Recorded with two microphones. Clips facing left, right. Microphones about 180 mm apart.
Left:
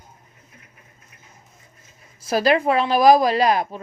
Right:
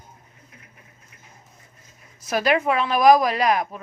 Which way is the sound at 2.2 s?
30° left (ahead or behind).